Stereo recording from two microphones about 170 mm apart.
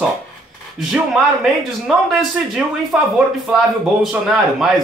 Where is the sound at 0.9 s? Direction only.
5° right (ahead or behind).